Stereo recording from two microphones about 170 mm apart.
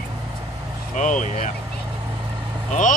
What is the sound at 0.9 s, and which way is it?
Vehicle, 45° left (ahead or behind).